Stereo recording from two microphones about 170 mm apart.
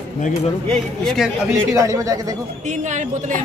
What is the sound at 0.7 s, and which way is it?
Speech, 5° left (ahead or behind).